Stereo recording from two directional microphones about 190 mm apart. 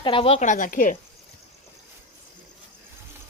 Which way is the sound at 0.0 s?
30° left (ahead or behind).